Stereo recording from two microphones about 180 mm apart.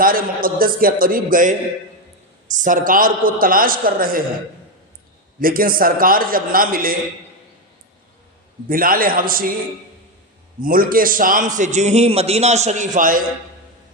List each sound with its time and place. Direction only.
0.0 s a man's voice: 50° right (ahead or behind)
5.4 s a man's voice: 50° right (ahead or behind)
8.6 s a man's voice: 50° right (ahead or behind)
10.6 s a man's voice: 50° right (ahead or behind)